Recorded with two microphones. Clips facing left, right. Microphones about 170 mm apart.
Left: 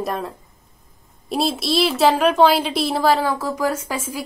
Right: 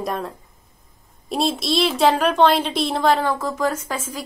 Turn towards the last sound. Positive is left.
turn(degrees=10)  # may be behind; listen again after turning